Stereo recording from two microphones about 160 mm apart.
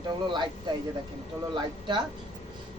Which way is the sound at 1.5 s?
30° right (ahead or behind).